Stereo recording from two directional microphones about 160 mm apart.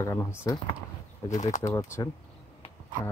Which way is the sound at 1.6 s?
20° left (ahead or behind).